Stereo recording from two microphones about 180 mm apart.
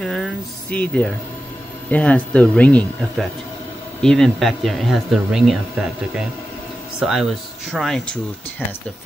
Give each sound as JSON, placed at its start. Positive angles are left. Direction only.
{"t": 0.0, "sound": "speech", "side_deg": 0}